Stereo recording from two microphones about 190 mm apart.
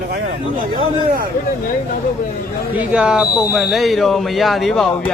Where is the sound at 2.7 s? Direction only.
5° right (ahead or behind).